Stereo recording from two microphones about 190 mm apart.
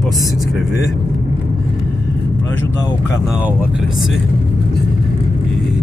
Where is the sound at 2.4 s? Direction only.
20° left (ahead or behind).